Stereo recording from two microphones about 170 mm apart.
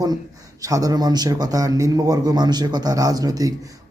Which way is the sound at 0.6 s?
20° right (ahead or behind).